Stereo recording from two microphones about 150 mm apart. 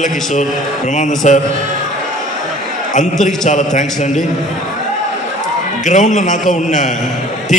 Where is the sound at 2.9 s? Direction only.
55° left (ahead or behind).